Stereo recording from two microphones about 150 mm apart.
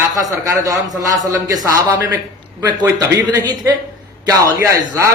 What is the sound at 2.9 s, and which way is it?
A man's voice, 25° right (ahead or behind).